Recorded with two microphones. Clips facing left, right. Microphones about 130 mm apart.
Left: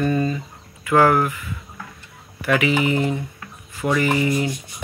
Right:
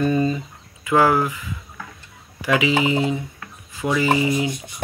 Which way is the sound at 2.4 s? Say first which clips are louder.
Even; 15° right (ahead or behind).